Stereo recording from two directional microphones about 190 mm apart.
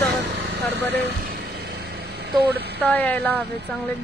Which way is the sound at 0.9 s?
50° right (ahead or behind).